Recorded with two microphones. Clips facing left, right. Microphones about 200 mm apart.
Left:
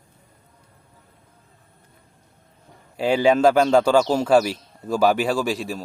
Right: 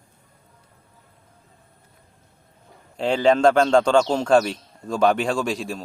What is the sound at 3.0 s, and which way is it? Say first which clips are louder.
Speech: left 1 dB; 10° left (ahead or behind).